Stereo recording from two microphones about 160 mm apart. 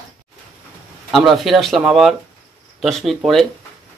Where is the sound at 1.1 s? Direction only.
Centre (ahead or behind).